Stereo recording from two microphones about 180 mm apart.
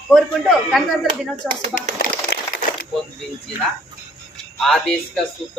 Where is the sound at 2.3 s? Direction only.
75° left (ahead or behind).